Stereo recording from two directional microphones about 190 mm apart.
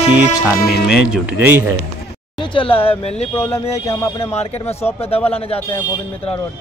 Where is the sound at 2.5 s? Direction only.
30° left (ahead or behind).